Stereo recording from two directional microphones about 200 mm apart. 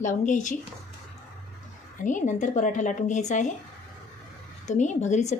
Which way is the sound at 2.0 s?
40° left (ahead or behind).